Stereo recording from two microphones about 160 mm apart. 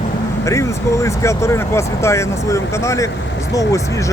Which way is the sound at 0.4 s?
20° left (ahead or behind).